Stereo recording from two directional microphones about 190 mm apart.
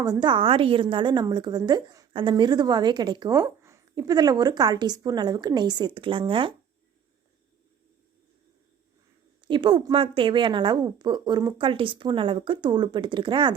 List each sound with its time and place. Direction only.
0.0 s a woman's voice: 20° right (ahead or behind)
9.5 s a woman's voice: 25° right (ahead or behind)